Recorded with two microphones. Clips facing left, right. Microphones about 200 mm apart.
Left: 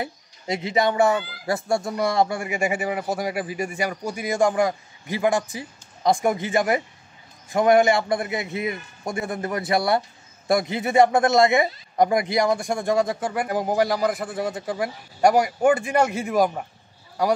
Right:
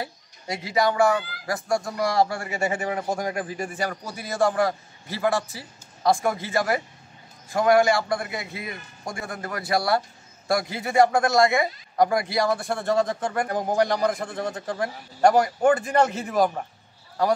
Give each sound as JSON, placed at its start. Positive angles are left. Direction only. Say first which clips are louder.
{"t": 0.0, "sound": "a man's voice", "louder": "left 3 dB", "side_deg": 20}